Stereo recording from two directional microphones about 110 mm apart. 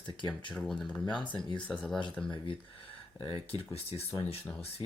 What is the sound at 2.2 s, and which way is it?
Speech, 5° left (ahead or behind).